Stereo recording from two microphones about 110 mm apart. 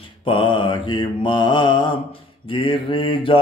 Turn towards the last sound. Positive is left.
turn(degrees=50)  # may be behind; listen again after turning